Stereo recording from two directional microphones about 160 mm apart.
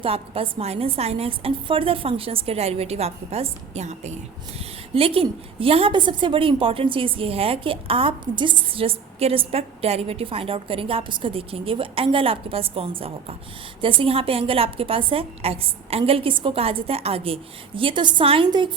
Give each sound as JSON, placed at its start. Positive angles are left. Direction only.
{"t": 0.0, "sound": "a woman's voice", "side_deg": -35}